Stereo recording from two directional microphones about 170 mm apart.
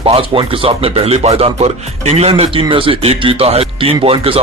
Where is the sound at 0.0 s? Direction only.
30° right (ahead or behind).